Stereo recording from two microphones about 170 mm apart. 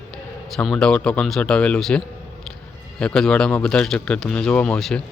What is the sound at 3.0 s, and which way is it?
Speech, 5° left (ahead or behind).